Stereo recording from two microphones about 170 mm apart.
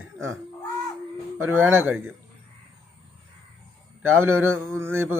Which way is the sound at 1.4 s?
15° right (ahead or behind).